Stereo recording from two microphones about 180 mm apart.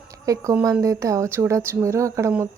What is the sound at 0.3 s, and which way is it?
A woman's voice, 20° right (ahead or behind).